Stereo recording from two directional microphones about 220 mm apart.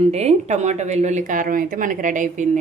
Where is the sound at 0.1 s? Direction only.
30° right (ahead or behind).